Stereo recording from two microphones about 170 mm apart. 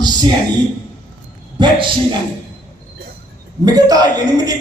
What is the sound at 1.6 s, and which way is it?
Speech, 30° right (ahead or behind).